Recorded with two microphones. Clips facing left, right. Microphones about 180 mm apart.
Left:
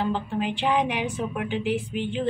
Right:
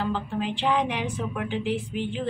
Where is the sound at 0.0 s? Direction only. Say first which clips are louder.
Left 2 dB; 15° left (ahead or behind).